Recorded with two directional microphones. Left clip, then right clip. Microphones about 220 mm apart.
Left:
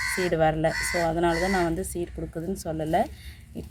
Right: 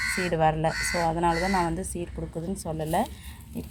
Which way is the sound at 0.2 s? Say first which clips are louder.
Left 2 dB; 10° left (ahead or behind).